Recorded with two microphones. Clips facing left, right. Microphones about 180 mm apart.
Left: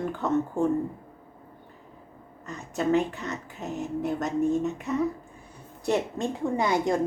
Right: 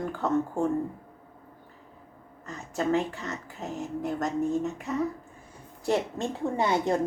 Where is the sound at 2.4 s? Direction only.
20° left (ahead or behind).